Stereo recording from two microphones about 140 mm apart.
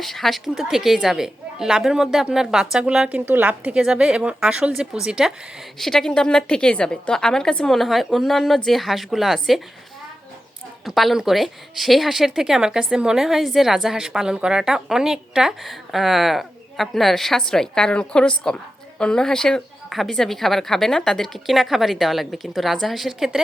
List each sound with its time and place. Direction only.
0.0 s a woman's voice: centre (ahead or behind)
10.8 s a woman's voice: centre (ahead or behind)